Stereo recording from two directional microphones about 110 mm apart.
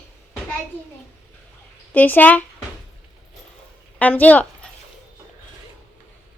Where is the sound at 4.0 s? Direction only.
15° left (ahead or behind).